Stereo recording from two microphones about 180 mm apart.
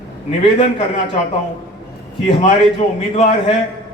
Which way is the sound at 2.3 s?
30° left (ahead or behind).